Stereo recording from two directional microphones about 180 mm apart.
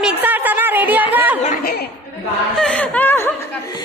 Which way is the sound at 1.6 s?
60° left (ahead or behind).